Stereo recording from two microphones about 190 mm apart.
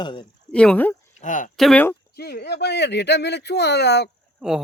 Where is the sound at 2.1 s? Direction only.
55° left (ahead or behind).